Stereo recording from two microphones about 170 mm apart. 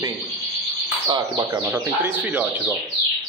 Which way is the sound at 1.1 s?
20° right (ahead or behind).